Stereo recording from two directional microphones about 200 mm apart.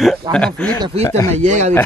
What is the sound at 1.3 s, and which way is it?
Speech, 35° right (ahead or behind).